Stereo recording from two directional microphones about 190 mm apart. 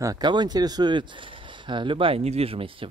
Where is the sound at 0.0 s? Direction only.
20° right (ahead or behind).